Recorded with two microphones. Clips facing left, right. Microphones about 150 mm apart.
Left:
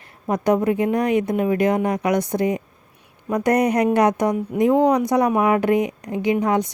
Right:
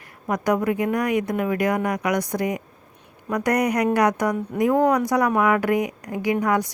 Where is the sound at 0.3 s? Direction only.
25° left (ahead or behind).